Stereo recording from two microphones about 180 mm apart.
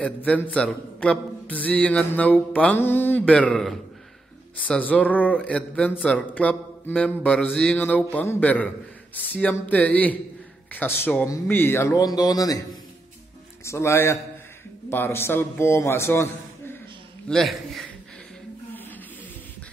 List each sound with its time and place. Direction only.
0.0 s mantra: 10° left (ahead or behind)
11.3 s speech: 10° left (ahead or behind)
13.7 s mantra: 15° left (ahead or behind)
17.3 s a man's voice: centre (ahead or behind)